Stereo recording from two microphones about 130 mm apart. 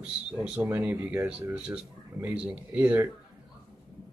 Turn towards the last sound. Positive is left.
turn(degrees=-15)  # may be behind; listen again after turning